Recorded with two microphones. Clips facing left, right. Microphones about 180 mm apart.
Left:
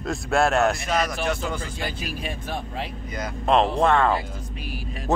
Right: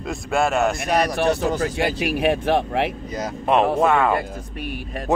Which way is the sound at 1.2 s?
35° right (ahead or behind).